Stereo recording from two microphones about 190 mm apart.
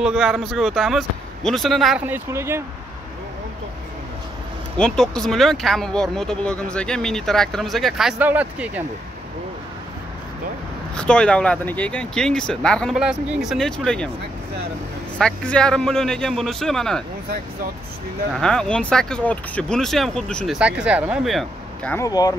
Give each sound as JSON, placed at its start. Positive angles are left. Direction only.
{"t": 0.0, "sound": "speech", "side_deg": -5}
{"t": 4.7, "sound": "speech", "side_deg": 5}
{"t": 11.0, "sound": "speech", "side_deg": 5}
{"t": 15.1, "sound": "speech", "side_deg": 5}
{"t": 18.3, "sound": "speech", "side_deg": 5}
{"t": 21.9, "sound": "speech", "side_deg": 20}